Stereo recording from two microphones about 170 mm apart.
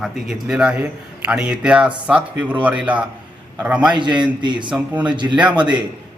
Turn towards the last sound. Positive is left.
turn(degrees=-25)  # may be behind; listen again after turning